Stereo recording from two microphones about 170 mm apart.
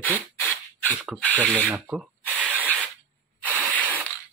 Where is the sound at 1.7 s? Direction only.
5° right (ahead or behind).